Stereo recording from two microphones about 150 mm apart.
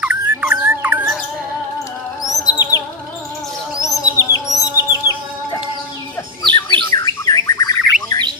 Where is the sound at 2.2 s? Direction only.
25° left (ahead or behind).